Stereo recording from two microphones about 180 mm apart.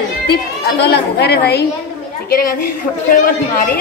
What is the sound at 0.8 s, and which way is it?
Speech, 65° left (ahead or behind).